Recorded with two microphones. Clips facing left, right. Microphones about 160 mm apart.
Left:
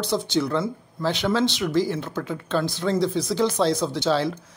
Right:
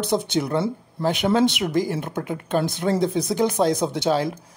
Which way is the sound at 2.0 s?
15° right (ahead or behind).